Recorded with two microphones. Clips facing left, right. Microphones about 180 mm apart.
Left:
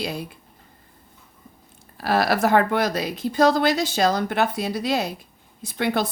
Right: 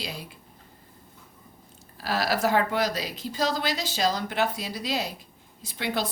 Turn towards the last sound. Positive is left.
turn(degrees=50)  # may be behind; listen again after turning